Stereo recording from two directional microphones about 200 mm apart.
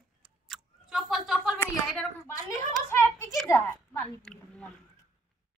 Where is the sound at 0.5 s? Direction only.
Centre (ahead or behind).